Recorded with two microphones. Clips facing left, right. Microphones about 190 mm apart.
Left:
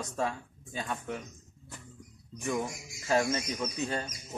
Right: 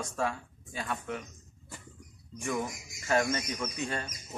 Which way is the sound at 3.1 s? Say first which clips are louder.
Even; 25° left (ahead or behind).